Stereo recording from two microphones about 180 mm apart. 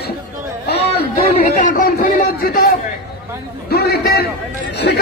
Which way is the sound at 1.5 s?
50° left (ahead or behind).